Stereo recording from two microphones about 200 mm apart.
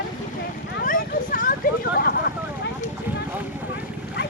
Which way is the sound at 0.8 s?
45° left (ahead or behind).